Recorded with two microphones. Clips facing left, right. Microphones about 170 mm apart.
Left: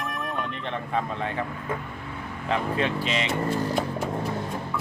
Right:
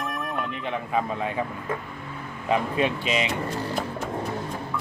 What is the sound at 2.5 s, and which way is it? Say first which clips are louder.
Speech: right 2 dB; 15° right (ahead or behind).